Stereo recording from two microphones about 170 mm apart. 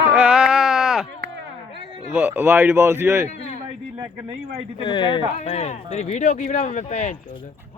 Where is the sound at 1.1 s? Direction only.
90° right.